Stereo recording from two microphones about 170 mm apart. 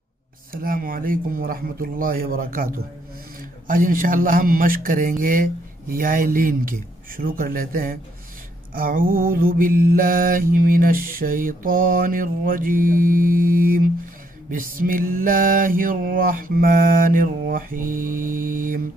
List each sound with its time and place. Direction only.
0.5 s mantra: 55° right (ahead or behind)